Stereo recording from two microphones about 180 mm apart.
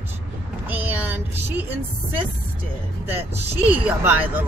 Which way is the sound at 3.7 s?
10° right (ahead or behind).